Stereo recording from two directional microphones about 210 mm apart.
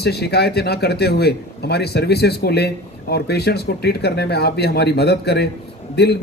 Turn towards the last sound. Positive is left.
turn(degrees=50)  # may be behind; listen again after turning